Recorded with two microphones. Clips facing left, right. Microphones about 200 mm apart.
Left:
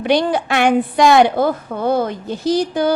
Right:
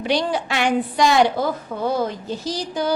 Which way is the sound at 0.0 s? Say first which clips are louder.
Left 5 dB; 55° left (ahead or behind).